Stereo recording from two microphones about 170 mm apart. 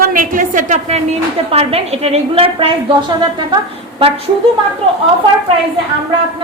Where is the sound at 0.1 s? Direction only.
55° right (ahead or behind); by 3.6 s 25° right (ahead or behind).